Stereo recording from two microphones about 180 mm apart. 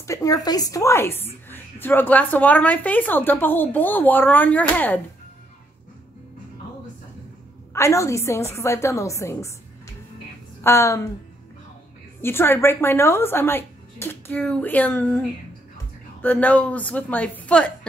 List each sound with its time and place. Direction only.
0.0 s a woman's voice: 20° left (ahead or behind)
7.7 s a woman's voice: 15° left (ahead or behind)
12.2 s a woman's voice: 15° left (ahead or behind)